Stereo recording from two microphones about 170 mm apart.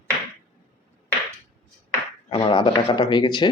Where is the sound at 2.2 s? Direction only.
30° left (ahead or behind).